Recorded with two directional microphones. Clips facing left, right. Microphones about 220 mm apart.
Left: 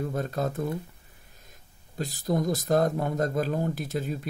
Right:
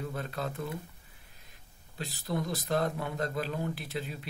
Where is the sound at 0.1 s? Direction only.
40° left (ahead or behind).